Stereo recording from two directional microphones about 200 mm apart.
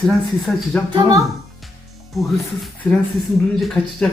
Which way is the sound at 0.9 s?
15° right (ahead or behind).